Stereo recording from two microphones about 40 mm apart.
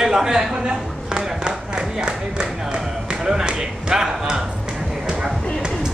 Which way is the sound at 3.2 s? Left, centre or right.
Centre.